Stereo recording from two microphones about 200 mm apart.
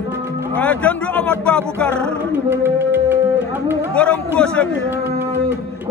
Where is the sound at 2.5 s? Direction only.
10° right (ahead or behind).